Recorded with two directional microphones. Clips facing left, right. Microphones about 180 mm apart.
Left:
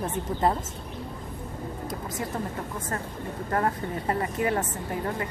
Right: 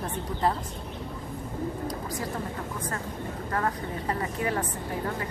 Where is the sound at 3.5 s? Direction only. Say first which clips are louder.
Left 3 dB; 30° left (ahead or behind).